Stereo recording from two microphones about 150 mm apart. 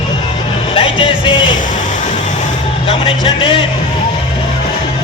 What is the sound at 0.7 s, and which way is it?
Music, 35° left (ahead or behind).